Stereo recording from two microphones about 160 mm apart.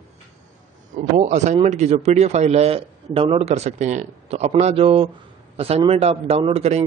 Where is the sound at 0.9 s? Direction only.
50° right (ahead or behind).